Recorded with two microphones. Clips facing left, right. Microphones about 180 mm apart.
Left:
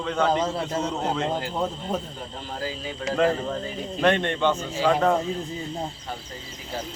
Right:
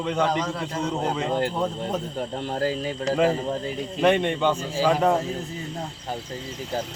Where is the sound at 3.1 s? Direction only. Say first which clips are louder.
Even; 5° right (ahead or behind).